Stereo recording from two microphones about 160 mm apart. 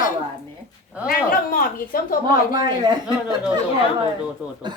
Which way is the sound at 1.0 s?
65° left (ahead or behind).